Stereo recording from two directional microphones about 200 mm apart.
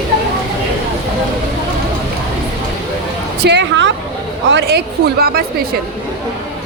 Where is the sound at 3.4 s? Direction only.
60° right (ahead or behind).